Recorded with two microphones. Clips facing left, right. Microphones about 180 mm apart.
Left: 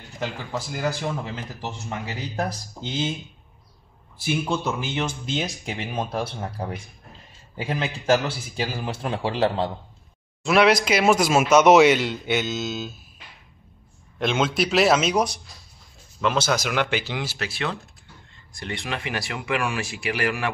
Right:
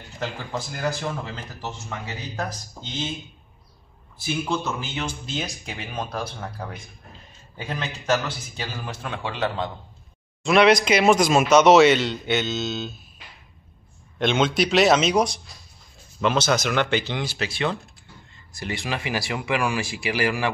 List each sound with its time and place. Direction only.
0.2 s speech: 10° left (ahead or behind)
4.3 s speech: 20° left (ahead or behind)
7.8 s a man's voice: 30° left (ahead or behind)
10.4 s speech: 5° left (ahead or behind)
14.1 s speech: 5° left (ahead or behind)